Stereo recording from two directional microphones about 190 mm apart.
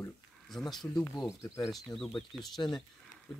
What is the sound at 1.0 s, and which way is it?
Speech, 15° left (ahead or behind).